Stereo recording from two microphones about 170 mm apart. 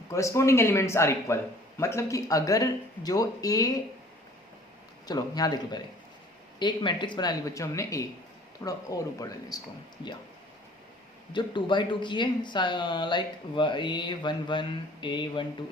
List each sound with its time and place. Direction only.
0.1 s speech: 20° left (ahead or behind)
5.0 s speech: 25° left (ahead or behind)
11.3 s speech: 25° left (ahead or behind)